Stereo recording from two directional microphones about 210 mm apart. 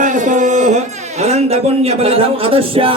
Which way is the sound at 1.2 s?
30° right (ahead or behind).